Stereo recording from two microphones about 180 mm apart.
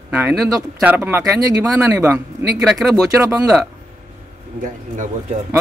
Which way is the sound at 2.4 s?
15° right (ahead or behind).